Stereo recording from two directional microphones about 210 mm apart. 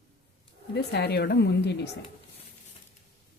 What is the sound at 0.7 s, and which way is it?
Speech, 50° left (ahead or behind).